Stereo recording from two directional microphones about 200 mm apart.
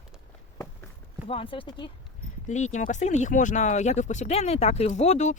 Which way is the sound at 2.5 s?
35° left (ahead or behind).